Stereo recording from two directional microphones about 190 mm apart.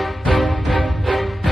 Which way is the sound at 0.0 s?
Centre (ahead or behind).